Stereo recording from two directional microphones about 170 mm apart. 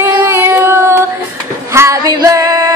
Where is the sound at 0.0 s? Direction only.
15° right (ahead or behind).